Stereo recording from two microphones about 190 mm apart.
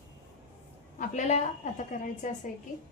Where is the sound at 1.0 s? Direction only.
40° left (ahead or behind).